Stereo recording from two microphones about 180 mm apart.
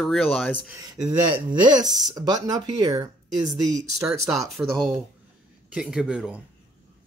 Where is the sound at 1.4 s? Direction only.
25° right (ahead or behind).